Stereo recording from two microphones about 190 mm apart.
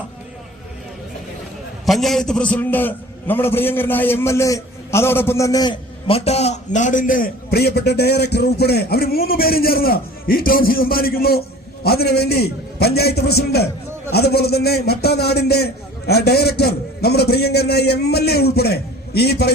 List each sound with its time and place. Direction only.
1.9 s a man's voice: centre (ahead or behind); by 19.5 s 55° left (ahead or behind)